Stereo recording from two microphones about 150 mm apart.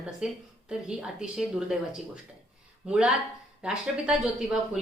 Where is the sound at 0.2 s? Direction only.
5° right (ahead or behind).